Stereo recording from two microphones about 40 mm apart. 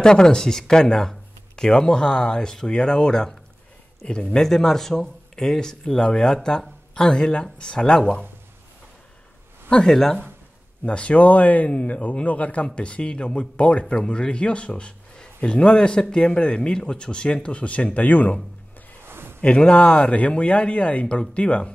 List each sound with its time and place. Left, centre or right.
0.0 s speech: centre
4.4 s speech: centre
9.7 s a man's voice: left
12.6 s speech: left
18.0 s speech: left
19.0 s a sound: right
19.4 s speech: left